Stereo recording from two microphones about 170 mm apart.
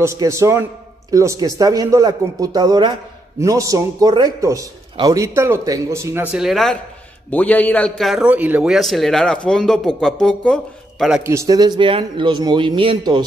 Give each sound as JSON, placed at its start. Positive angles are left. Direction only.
{"t": 0.0, "sound": "a man's voice", "side_deg": -15}
{"t": 6.3, "sound": "a man's voice", "side_deg": 0}
{"t": 11.2, "sound": "a man's voice", "side_deg": -20}